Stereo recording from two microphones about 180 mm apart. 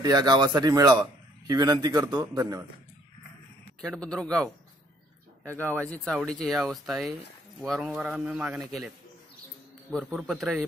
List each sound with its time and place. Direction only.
0.0 s a man's voice: 25° right (ahead or behind)
3.8 s a man's voice: 5° left (ahead or behind)